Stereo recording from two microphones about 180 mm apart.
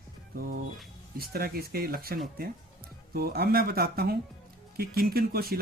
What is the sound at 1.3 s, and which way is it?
Speech, 55° right (ahead or behind).